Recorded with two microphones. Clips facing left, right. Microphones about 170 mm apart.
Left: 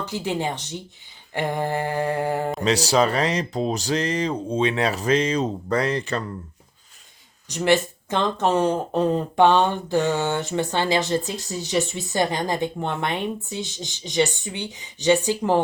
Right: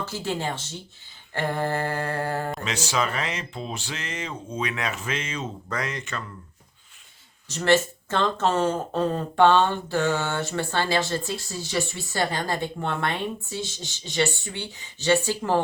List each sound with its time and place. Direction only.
0.0 s speech: 15° left (ahead or behind)
2.6 s speech: 35° left (ahead or behind)
7.4 s speech: 15° left (ahead or behind)